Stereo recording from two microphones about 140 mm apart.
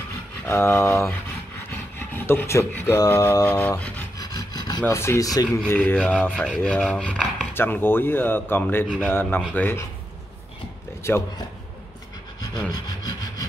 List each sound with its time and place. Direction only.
0.5 s speech: 15° left (ahead or behind)
3.4 s speech: 10° left (ahead or behind)
4.2 s speech: 30° left (ahead or behind)
5.8 s speech: 10° left (ahead or behind)
11.0 s a man's voice: 20° left (ahead or behind)
12.7 s rub: 25° left (ahead or behind)